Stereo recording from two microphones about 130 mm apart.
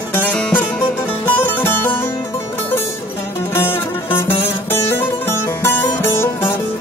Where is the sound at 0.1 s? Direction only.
10° left (ahead or behind).